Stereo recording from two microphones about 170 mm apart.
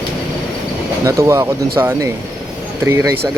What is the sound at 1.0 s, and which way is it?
Speech, 15° right (ahead or behind).